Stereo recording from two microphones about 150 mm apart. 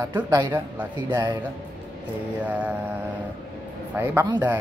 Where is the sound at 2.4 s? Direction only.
10° right (ahead or behind).